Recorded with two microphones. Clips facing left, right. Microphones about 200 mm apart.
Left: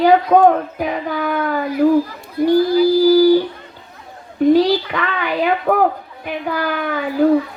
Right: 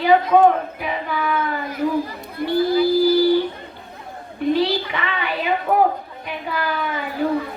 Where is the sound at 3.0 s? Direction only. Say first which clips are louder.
Left 7 dB; 40° left (ahead or behind).